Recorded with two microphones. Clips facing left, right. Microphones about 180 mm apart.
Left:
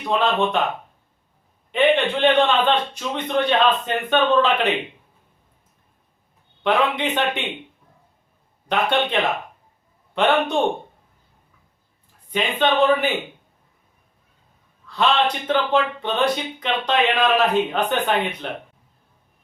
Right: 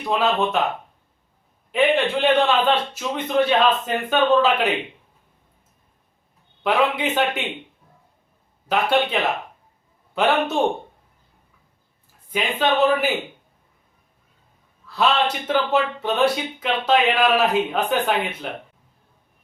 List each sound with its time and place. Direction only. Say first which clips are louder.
0.0 s speech: even; 5° right (ahead or behind)
1.7 s speech: left 1 dB; 5° right (ahead or behind)
6.6 s speech: even; 5° right (ahead or behind)
8.6 s speech: right 1 dB; 5° right (ahead or behind)
10.2 s speech: left 1 dB; 5° right (ahead or behind)
12.3 s speech: left 1 dB; 5° right (ahead or behind)
14.8 s speech: left 1 dB; 5° right (ahead or behind)